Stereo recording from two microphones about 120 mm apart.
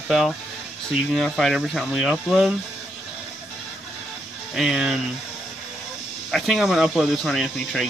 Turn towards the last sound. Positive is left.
turn(degrees=0)  # may be behind; listen again after turning